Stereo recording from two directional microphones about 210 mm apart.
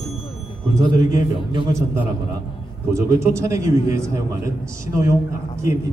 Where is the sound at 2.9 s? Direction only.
15° right (ahead or behind).